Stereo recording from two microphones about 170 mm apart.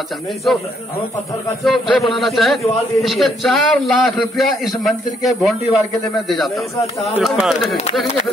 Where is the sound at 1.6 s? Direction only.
Centre (ahead or behind).